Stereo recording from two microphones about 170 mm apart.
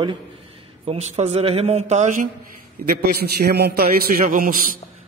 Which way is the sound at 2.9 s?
70° right (ahead or behind).